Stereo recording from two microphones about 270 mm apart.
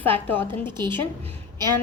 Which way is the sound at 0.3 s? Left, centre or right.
Centre.